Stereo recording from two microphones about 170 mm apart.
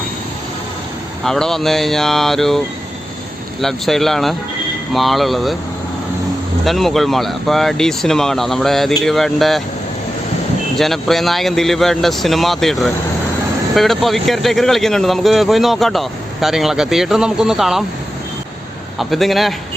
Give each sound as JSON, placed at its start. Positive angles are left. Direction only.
{"t": 1.2, "sound": "speech", "side_deg": 0}
{"t": 3.6, "sound": "speech", "side_deg": 0}
{"t": 6.7, "sound": "speech", "side_deg": 0}
{"t": 10.8, "sound": "speech", "side_deg": 0}
{"t": 18.9, "sound": "speech", "side_deg": 0}